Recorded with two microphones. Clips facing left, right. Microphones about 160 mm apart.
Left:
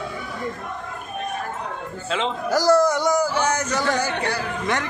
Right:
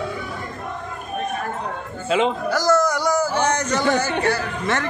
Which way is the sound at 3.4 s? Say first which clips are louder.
Right 2 dB; 10° left (ahead or behind).